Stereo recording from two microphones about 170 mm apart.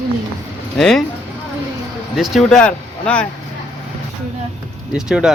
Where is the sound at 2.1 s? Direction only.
Centre (ahead or behind).